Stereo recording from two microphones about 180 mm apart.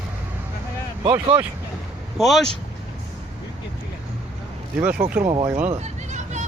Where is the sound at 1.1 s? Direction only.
25° right (ahead or behind).